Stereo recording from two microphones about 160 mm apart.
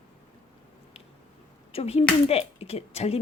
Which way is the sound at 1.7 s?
40° left (ahead or behind).